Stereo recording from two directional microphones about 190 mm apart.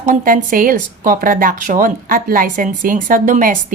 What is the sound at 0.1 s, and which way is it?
Speech, 45° right (ahead or behind).